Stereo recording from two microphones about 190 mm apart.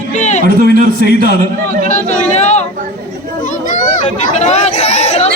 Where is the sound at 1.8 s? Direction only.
35° left (ahead or behind).